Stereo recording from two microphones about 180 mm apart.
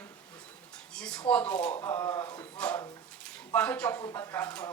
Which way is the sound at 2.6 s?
5° left (ahead or behind).